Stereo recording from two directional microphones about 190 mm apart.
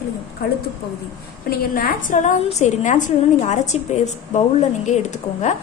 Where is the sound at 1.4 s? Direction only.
50° left (ahead or behind).